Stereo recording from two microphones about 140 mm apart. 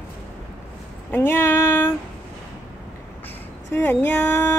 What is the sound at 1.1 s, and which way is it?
Female singing, 15° left (ahead or behind).